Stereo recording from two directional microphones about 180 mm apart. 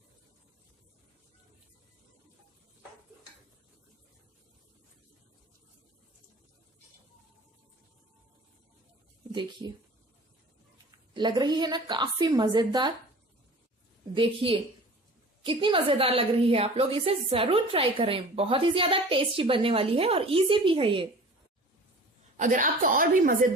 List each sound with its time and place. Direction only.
9.3 s speech: 25° right (ahead or behind)
11.1 s a woman's voice: 25° right (ahead or behind)
14.1 s a woman's voice: 30° right (ahead or behind)
22.4 s a woman's voice: 45° right (ahead or behind)